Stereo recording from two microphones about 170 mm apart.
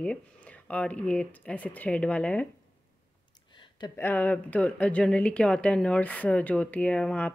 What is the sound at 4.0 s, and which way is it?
A woman's voice, 10° left (ahead or behind).